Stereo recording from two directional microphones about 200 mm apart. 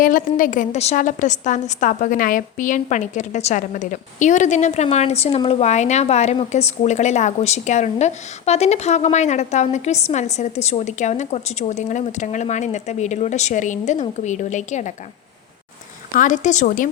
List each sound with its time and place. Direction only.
0.0 s a woman's voice: 45° left (ahead or behind)
16.1 s a woman's voice: 40° left (ahead or behind)